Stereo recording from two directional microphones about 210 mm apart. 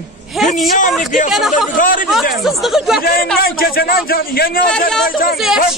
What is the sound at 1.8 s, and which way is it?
Speech, 40° left (ahead or behind).